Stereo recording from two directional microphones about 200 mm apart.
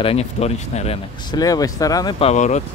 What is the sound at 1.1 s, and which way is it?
Speech, 20° left (ahead or behind).